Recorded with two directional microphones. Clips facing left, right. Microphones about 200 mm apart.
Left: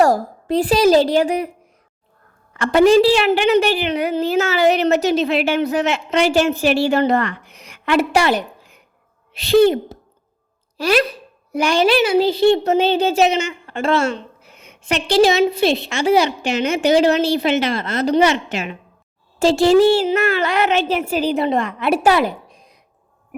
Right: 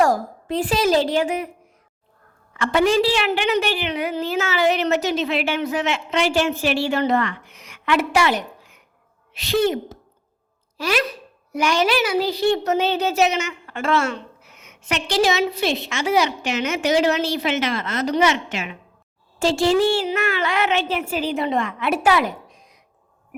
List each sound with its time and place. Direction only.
0.0 s speech: 35° left (ahead or behind)
2.5 s speech: 40° left (ahead or behind)